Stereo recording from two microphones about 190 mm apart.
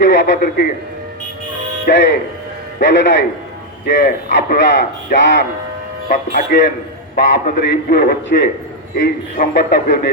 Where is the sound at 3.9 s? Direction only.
55° left (ahead or behind).